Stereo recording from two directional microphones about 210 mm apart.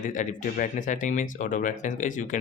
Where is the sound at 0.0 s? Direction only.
35° left (ahead or behind).